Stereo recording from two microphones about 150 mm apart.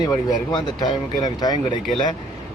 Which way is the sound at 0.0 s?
25° left (ahead or behind).